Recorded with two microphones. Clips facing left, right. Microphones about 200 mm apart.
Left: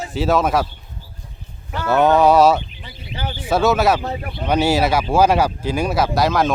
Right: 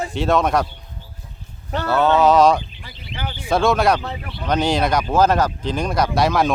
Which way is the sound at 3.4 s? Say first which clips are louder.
Left 1 dB; 5° left (ahead or behind).